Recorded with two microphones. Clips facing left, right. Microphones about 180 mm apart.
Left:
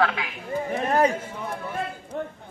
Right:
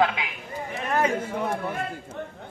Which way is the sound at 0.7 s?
35° left (ahead or behind).